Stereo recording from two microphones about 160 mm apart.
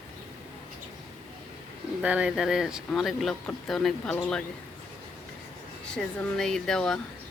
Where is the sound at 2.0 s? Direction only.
5° right (ahead or behind).